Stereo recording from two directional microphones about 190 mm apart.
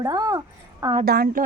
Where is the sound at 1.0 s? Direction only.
55° right (ahead or behind).